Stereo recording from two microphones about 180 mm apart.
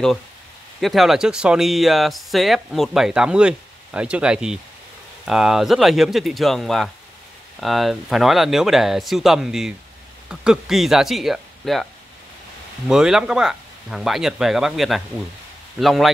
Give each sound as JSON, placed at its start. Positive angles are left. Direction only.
{"t": 0.7, "sound": "speech", "side_deg": 0}